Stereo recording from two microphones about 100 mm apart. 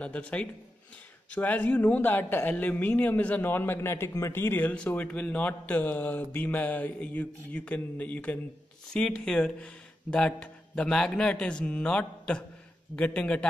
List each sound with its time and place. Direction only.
0.0 s a man's voice: 15° left (ahead or behind)